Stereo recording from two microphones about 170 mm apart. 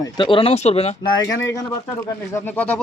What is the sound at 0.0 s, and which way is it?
Speech, 30° left (ahead or behind).